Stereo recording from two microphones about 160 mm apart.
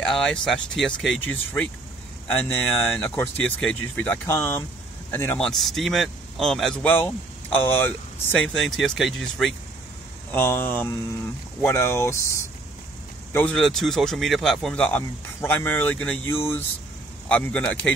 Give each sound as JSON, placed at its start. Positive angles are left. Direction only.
{"t": 0.1, "sound": "speech", "side_deg": 5}
{"t": 5.5, "sound": "speech", "side_deg": 0}
{"t": 8.5, "sound": "speech", "side_deg": 0}
{"t": 10.3, "sound": "speech", "side_deg": 15}
{"t": 13.3, "sound": "speech", "side_deg": 10}